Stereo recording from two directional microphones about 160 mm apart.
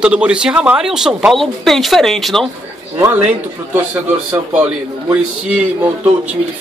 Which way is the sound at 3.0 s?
10° right (ahead or behind).